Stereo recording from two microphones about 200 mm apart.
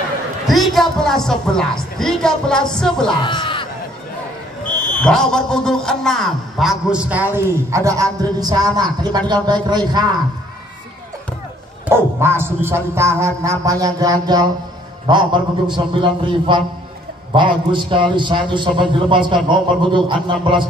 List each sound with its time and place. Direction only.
0.5 s a man's voice: centre (ahead or behind)
3.1 s speech: 20° left (ahead or behind)
4.6 s a man's voice: 5° left (ahead or behind); by 10.0 s 20° right (ahead or behind)
11.9 s dog: 10° right (ahead or behind)
15.0 s a man's voice: 25° right (ahead or behind)